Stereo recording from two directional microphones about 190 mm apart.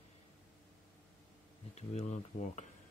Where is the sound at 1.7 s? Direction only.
35° left (ahead or behind).